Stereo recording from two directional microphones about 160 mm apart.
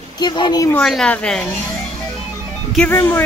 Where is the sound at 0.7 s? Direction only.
5° left (ahead or behind).